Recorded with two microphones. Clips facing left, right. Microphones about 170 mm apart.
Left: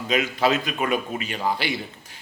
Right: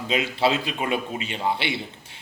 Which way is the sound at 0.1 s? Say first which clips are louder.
Left 1 dB; 30° right (ahead or behind).